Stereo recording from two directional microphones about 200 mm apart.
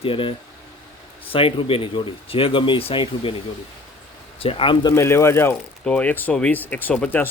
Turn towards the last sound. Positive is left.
turn(degrees=5)  # may be behind; listen again after turning